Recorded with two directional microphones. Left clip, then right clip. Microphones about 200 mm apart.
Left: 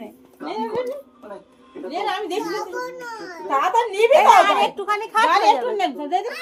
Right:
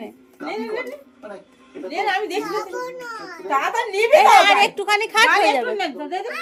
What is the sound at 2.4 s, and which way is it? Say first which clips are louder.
A child's voice: right 1 dB; 10° right (ahead or behind).